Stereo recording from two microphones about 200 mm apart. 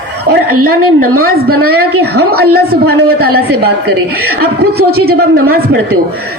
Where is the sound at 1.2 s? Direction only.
50° right (ahead or behind).